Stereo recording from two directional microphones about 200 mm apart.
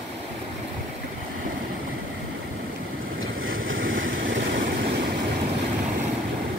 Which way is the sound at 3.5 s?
75° right (ahead or behind).